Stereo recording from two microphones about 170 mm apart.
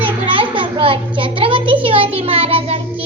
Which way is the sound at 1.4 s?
30° right (ahead or behind).